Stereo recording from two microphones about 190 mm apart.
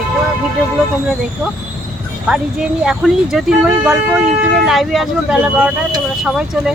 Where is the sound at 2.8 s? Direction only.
Centre (ahead or behind).